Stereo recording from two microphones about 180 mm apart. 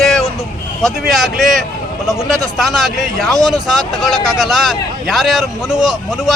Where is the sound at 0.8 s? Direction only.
Centre (ahead or behind).